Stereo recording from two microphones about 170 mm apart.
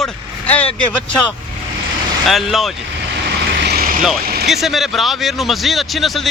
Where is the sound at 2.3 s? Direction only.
Centre (ahead or behind).